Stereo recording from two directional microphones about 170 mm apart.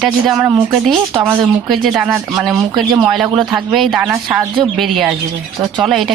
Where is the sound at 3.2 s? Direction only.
25° right (ahead or behind).